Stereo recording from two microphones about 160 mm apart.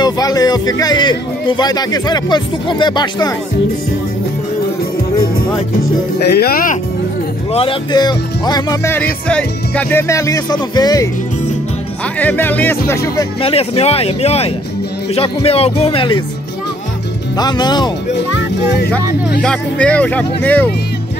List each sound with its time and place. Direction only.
0.0 s a man's voice: 25° left (ahead or behind)
6.3 s speech: 75° left (ahead or behind)
7.5 s a man's voice: 30° left (ahead or behind)
8.9 s a man's voice: 10° left (ahead or behind)
12.2 s speech: 10° left (ahead or behind)
13.4 s speech: 35° left (ahead or behind)
17.4 s a man's voice: 25° left (ahead or behind)
19.4 s speech: 5° left (ahead or behind)